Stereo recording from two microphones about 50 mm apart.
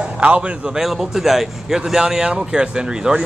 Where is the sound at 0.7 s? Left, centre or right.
Centre.